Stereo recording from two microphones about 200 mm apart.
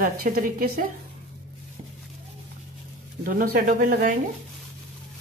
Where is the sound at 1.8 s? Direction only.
25° right (ahead or behind).